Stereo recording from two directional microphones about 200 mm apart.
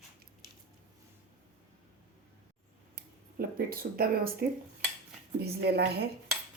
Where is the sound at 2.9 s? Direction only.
50° right (ahead or behind).